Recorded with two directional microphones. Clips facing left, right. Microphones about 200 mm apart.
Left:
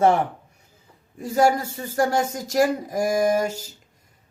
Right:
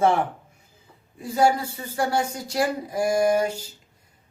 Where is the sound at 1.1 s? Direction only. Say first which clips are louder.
Left 1 dB; 45° left (ahead or behind).